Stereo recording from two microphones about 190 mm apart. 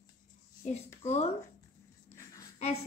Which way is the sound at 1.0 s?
35° left (ahead or behind).